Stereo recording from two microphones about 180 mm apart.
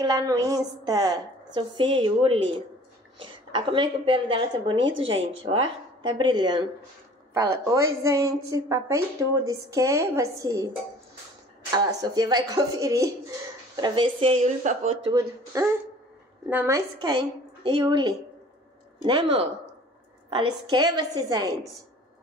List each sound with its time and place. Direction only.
0.0 s a woman's voice: 20° right (ahead or behind)
4.7 s speech: 90° right
6.0 s a woman's voice: 25° right (ahead or behind)
11.7 s a woman's voice: 20° right (ahead or behind); by 15.0 s 40° right (ahead or behind)
15.0 s a woman's voice: 20° right (ahead or behind)